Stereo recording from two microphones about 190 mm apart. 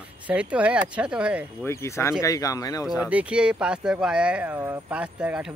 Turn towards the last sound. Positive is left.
turn(degrees=-5)  # may be behind; listen again after turning